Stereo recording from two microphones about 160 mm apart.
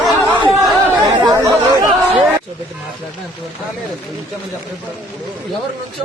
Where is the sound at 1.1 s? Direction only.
25° right (ahead or behind).